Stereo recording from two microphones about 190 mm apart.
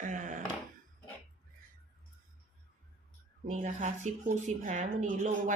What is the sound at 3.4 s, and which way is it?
Speech, 40° right (ahead or behind).